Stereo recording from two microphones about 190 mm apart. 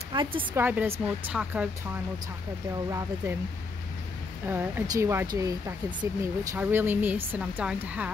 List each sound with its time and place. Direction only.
0.1 s speech: 25° right (ahead or behind)
0.6 s a woman's voice: 10° right (ahead or behind)
2.9 s a woman's voice: 15° right (ahead or behind)
4.5 s a woman's voice: 10° right (ahead or behind)
6.5 s a woman's voice: 10° right (ahead or behind)